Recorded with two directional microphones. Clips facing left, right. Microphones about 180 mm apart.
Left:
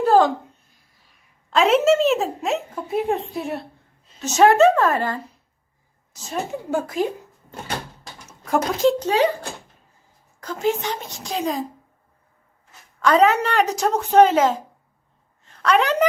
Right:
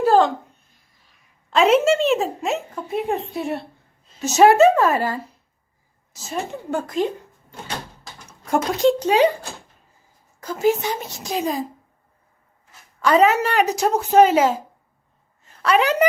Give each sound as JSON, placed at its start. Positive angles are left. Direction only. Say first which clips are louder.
{"t": 0.0, "sound": "a sound", "louder": "even", "side_deg": 0}
{"t": 1.5, "sound": "speech", "louder": "even", "side_deg": 0}
{"t": 6.5, "sound": "a woman's voice", "louder": "left 1 dB", "side_deg": 10}
{"t": 8.3, "sound": "speech", "louder": "even", "side_deg": 0}
{"t": 9.0, "sound": "speech", "louder": "right 3 dB", "side_deg": -15}
{"t": 10.4, "sound": "speech", "louder": "right 3 dB", "side_deg": -5}
{"t": 13.0, "sound": "a woman's voice", "louder": "even", "side_deg": -5}